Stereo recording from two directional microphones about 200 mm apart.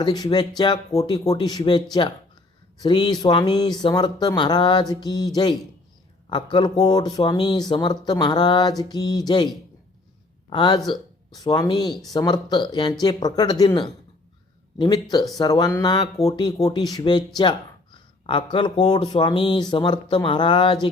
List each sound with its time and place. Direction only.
0.0 s speech: 20° left (ahead or behind)
10.5 s speech: 25° left (ahead or behind)
18.5 s speech: 25° left (ahead or behind)